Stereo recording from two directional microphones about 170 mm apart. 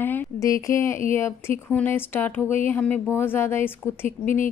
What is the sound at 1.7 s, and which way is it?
A woman's voice, 10° left (ahead or behind).